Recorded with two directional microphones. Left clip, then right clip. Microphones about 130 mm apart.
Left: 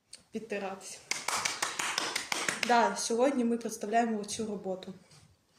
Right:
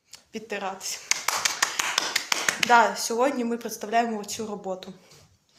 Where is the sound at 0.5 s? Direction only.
25° left (ahead or behind).